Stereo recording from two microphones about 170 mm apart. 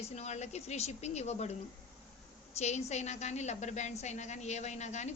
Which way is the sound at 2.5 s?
40° left (ahead or behind).